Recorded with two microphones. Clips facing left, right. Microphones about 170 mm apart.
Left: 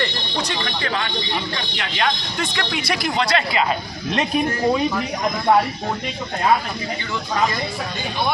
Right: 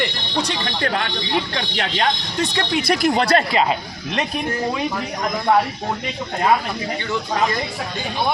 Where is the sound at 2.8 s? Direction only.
45° right (ahead or behind).